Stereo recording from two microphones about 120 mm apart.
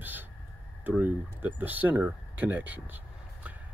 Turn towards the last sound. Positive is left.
turn(degrees=-15)  # may be behind; listen again after turning